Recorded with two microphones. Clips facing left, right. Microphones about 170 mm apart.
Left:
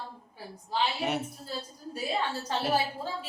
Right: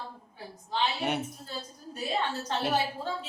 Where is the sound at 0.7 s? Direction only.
Centre (ahead or behind).